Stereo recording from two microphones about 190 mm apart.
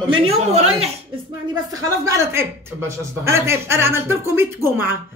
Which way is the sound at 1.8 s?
15° right (ahead or behind).